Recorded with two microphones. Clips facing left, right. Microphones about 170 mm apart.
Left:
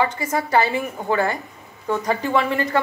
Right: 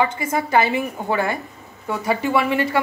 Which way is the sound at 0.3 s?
15° right (ahead or behind).